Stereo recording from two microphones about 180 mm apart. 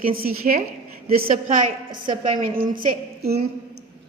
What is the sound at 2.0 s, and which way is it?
Speech, 25° right (ahead or behind).